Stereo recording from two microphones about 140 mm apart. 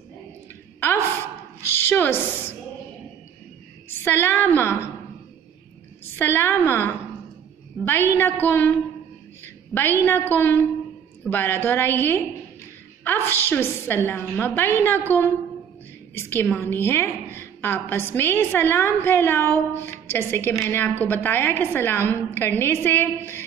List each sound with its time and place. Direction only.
0.7 s a sound: 15° left (ahead or behind)
1.8 s a woman's voice: 15° left (ahead or behind)
4.0 s a woman's voice: 15° left (ahead or behind)
6.1 s a woman's voice: 15° left (ahead or behind)
10.0 s a woman's voice: 15° left (ahead or behind)